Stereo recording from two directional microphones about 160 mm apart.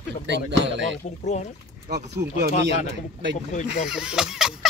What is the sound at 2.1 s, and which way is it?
Speech, 90° right.